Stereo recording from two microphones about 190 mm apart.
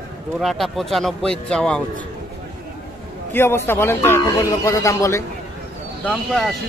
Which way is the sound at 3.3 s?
10° left (ahead or behind).